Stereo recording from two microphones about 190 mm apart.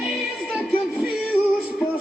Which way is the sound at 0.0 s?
Centre (ahead or behind).